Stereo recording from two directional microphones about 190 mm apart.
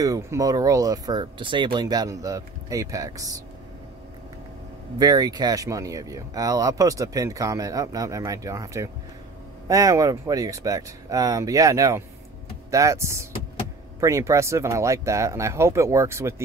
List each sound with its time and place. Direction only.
0.0 s speech: 20° right (ahead or behind)
4.9 s speech: 20° right (ahead or behind)